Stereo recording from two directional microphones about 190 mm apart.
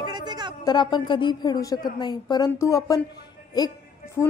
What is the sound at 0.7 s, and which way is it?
A woman's voice, 20° left (ahead or behind).